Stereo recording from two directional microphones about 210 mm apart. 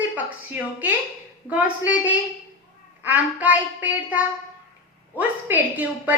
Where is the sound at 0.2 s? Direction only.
10° right (ahead or behind).